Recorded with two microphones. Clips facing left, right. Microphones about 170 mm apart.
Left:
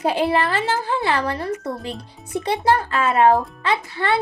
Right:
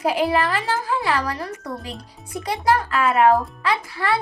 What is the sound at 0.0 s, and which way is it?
A child's voice, 25° left (ahead or behind).